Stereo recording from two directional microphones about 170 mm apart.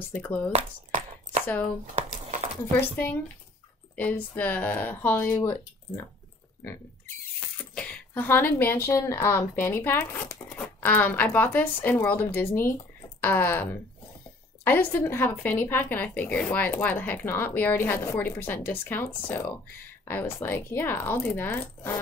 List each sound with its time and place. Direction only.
0.1 s speech: 10° left (ahead or behind)
0.5 s a sound: 40° right (ahead or behind)
3.9 s speech: 10° left (ahead or behind)
7.7 s a woman's voice: 5° left (ahead or behind)